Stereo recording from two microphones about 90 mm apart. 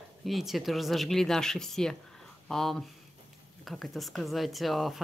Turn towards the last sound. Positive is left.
turn(degrees=0)  # may be behind; listen again after turning